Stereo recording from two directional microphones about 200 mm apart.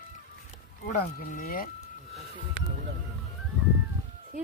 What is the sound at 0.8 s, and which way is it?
Speech, 45° left (ahead or behind).